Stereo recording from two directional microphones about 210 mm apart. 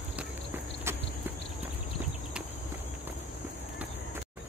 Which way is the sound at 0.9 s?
10° right (ahead or behind).